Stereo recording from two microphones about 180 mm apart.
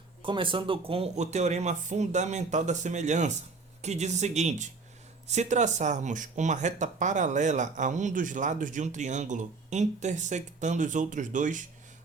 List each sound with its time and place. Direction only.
0.2 s speech: 30° right (ahead or behind); by 11.6 s 45° right (ahead or behind)